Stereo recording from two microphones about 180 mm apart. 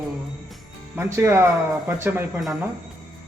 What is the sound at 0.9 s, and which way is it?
Speech, 15° right (ahead or behind).